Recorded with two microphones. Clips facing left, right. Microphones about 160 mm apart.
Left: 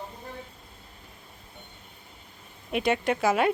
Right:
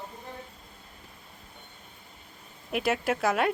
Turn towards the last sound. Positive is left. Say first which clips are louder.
# left 2 dB
turn(degrees=0)  # may be behind; listen again after turning